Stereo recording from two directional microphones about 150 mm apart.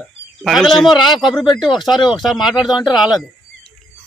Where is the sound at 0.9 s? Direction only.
30° left (ahead or behind).